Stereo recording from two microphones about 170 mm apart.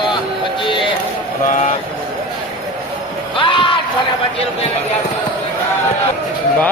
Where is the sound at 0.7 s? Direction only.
30° left (ahead or behind).